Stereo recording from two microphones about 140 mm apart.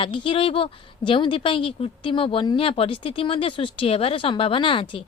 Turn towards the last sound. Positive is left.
turn(degrees=40)  # may be behind; listen again after turning